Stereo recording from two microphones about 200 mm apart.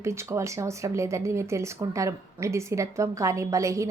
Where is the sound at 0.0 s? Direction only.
15° right (ahead or behind).